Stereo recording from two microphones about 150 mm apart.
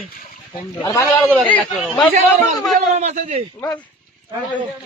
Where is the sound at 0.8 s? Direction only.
25° left (ahead or behind).